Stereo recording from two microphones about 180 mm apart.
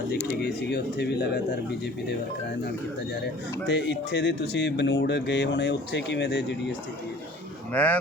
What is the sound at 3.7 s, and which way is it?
Speech, 75° left (ahead or behind).